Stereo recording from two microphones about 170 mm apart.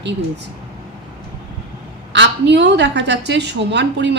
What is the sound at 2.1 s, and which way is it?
A woman's voice, 90° right.